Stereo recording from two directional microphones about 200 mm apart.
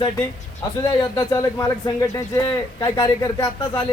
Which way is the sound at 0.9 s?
20° left (ahead or behind).